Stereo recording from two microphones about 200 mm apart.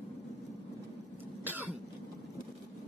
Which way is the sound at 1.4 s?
10° right (ahead or behind).